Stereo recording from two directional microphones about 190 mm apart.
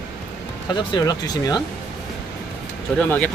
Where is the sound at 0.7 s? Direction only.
25° left (ahead or behind).